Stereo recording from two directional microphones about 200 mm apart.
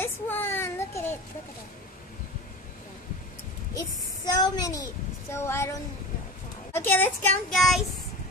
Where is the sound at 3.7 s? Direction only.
15° left (ahead or behind).